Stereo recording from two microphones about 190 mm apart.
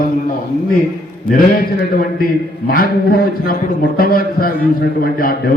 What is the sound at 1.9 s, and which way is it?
A man's voice, 50° left (ahead or behind).